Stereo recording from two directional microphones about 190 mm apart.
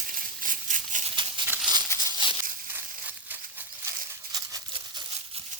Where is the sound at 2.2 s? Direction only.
25° left (ahead or behind).